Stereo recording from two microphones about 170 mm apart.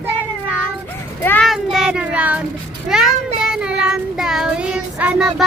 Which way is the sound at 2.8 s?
5° right (ahead or behind).